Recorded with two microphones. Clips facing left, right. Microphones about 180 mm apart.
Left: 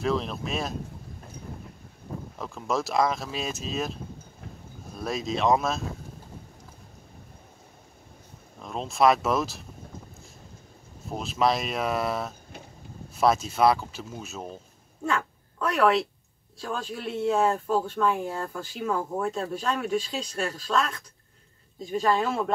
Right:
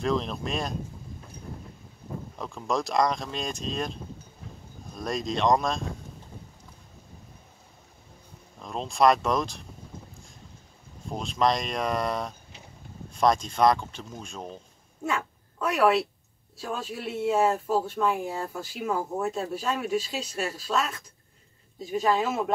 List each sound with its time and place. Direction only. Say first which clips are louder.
0.0 s speech: even; centre (ahead or behind)
2.3 s speech: even; centre (ahead or behind)
8.5 s speech: even; centre (ahead or behind)
11.1 s speech: even; 5° left (ahead or behind)
15.0 s speech: left 2 dB; 10° right (ahead or behind)
22.0 s speech: even; 5° right (ahead or behind)